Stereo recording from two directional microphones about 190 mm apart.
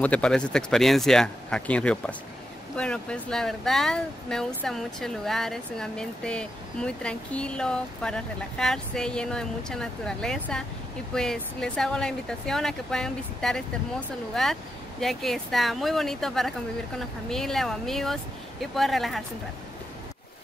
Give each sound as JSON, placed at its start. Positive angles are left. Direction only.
{"t": 0.0, "sound": "speech", "side_deg": 5}